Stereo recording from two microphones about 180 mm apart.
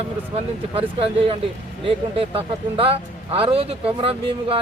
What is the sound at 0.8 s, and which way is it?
Speech, 30° right (ahead or behind).